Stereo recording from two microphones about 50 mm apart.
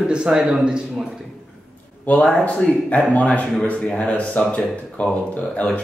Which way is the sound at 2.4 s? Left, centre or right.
Left.